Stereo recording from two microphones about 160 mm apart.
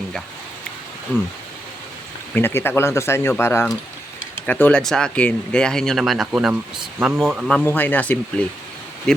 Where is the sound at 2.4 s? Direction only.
15° left (ahead or behind).